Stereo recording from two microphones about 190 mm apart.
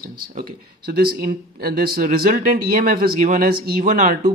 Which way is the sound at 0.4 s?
55° right (ahead or behind).